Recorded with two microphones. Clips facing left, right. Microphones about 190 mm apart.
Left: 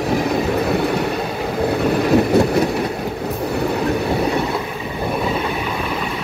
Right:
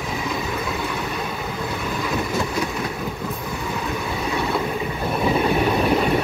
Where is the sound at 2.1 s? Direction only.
65° left (ahead or behind).